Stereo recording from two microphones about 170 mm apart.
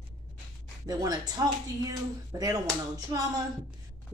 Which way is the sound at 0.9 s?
20° right (ahead or behind).